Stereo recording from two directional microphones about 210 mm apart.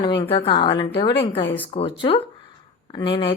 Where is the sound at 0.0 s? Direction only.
25° left (ahead or behind).